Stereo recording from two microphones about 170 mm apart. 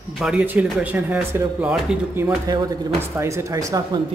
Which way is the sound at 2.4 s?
20° right (ahead or behind).